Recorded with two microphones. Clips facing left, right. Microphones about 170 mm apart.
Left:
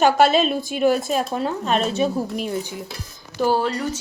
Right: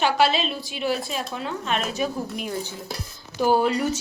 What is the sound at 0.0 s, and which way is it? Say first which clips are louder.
A woman's voice: left 5 dB; 45° left (ahead or behind).